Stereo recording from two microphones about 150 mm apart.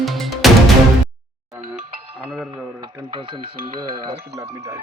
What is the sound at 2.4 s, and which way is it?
Music, 30° right (ahead or behind).